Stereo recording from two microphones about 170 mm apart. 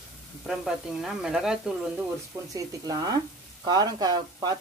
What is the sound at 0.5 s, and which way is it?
Speech, 5° right (ahead or behind).